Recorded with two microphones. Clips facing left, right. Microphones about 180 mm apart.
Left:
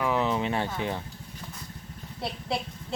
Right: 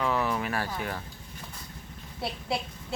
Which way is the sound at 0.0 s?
20° left (ahead or behind).